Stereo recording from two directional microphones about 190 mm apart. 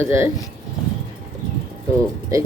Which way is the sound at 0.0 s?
15° right (ahead or behind).